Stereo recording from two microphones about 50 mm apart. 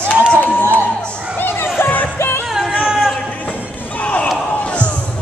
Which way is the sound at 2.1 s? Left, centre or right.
Left.